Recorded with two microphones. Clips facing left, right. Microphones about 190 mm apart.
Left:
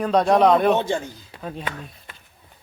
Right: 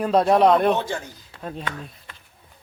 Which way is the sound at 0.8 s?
25° left (ahead or behind).